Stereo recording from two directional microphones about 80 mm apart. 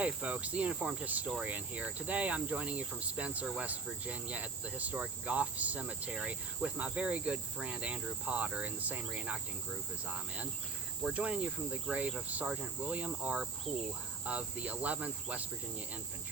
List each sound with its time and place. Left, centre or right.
0.0 s cricket: centre
11.0 s cricket: centre